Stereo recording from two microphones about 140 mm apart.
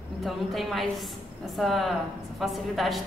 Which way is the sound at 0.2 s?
Centre (ahead or behind).